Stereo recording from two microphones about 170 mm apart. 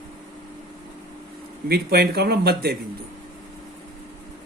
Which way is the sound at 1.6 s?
70° right (ahead or behind).